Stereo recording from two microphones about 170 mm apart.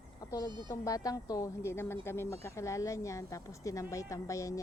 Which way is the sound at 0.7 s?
20° left (ahead or behind).